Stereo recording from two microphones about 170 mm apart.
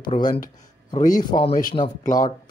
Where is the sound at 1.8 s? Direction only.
50° left (ahead or behind).